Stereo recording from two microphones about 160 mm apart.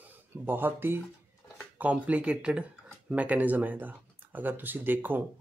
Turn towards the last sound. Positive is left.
turn(degrees=-10)  # may be behind; listen again after turning